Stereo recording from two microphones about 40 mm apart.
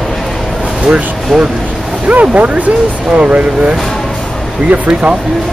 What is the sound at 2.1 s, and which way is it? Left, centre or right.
Speech, right.